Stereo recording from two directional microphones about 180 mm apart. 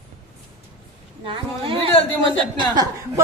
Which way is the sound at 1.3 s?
30° right (ahead or behind).